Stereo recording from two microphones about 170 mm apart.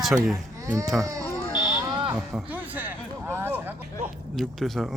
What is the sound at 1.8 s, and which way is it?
Fire alarm, 25° right (ahead or behind).